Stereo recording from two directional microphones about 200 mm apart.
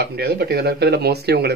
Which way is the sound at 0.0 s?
55° right (ahead or behind).